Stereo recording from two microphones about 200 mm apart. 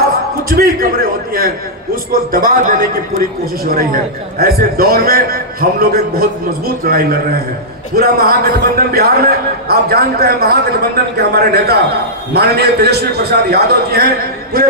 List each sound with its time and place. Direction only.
0.5 s a man's voice: 50° right (ahead or behind)